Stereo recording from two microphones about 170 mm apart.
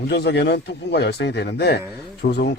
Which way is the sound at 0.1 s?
80° left.